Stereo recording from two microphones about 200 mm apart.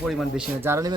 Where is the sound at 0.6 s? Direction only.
15° right (ahead or behind).